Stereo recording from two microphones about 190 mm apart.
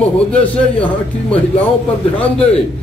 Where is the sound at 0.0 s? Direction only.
5° left (ahead or behind).